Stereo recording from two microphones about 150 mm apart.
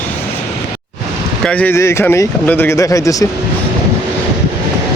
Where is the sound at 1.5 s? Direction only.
10° left (ahead or behind).